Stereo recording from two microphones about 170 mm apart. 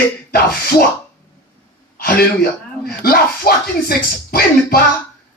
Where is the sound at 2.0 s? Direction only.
65° left (ahead or behind).